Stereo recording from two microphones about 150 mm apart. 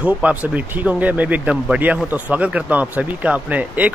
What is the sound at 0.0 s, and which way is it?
Speech, 10° right (ahead or behind).